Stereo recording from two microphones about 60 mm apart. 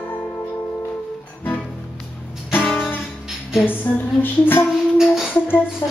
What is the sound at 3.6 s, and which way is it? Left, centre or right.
Female singing, left.